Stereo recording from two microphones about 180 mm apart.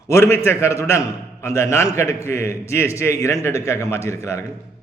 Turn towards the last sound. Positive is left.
turn(degrees=15)  # may be behind; listen again after turning